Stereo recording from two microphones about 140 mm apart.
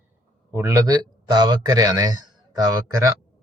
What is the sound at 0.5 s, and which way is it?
Speech, 20° right (ahead or behind).